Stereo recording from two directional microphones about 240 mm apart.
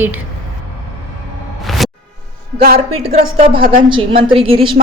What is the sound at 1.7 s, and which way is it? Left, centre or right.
Music, centre.